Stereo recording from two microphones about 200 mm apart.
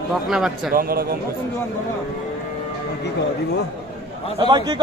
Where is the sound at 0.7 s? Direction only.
50° right (ahead or behind).